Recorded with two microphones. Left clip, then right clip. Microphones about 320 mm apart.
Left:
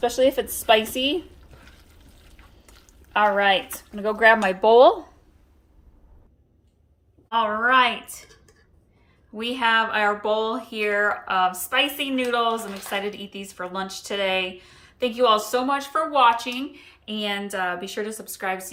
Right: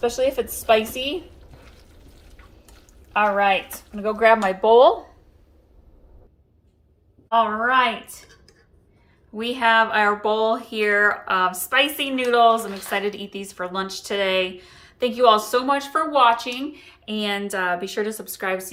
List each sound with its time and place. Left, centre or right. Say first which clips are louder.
0.0 s speech: left 1 dB; left
3.1 s speech: even; left
4.8 s speech: left 1 dB; left
7.3 s speech: right 1 dB; centre
9.3 s speech: right 3 dB; centre